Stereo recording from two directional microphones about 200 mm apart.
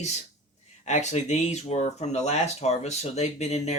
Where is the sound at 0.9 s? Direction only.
35° left (ahead or behind).